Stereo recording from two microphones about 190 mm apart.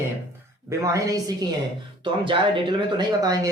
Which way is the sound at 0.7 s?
15° right (ahead or behind).